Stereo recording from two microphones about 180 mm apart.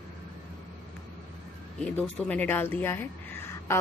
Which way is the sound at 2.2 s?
10° left (ahead or behind).